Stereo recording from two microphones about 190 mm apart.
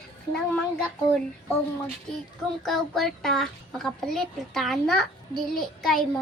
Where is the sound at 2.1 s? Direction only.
5° left (ahead or behind).